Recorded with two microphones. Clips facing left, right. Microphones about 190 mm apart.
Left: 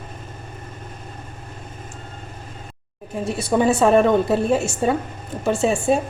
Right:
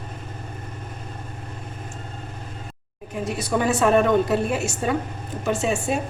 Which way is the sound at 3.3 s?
25° left (ahead or behind).